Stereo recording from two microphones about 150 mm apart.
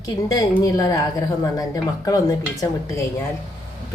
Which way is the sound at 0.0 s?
25° left (ahead or behind).